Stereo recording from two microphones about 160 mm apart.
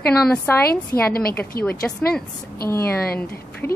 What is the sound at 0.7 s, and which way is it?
Speech, 70° left (ahead or behind).